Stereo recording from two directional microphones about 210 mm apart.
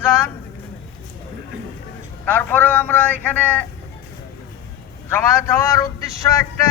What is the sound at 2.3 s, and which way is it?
A man's voice, 10° left (ahead or behind).